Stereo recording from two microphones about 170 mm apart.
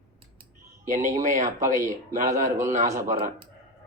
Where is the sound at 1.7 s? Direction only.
15° right (ahead or behind).